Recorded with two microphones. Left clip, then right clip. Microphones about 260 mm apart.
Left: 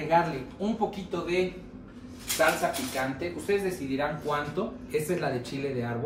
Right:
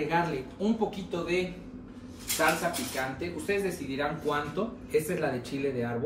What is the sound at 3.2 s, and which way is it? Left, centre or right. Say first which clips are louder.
Speech: left 2 dB; centre.